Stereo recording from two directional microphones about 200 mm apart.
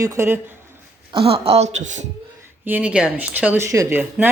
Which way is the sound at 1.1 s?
30° right (ahead or behind).